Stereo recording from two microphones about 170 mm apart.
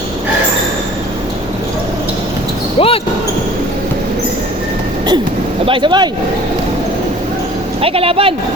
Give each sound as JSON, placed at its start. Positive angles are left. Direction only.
{"t": 2.7, "sound": "basketball bounce", "side_deg": 35}
{"t": 5.6, "sound": "speech", "side_deg": -30}
{"t": 7.8, "sound": "speech", "side_deg": -35}